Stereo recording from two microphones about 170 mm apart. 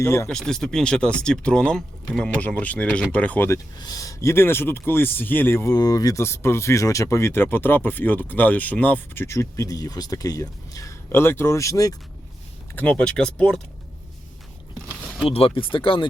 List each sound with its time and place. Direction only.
0.0 s a man's voice: 15° left (ahead or behind)
0.3 s a man's voice: 5° left (ahead or behind); by 11.9 s 20° left (ahead or behind)
12.7 s speech: 10° left (ahead or behind)
15.3 s speech: 35° left (ahead or behind)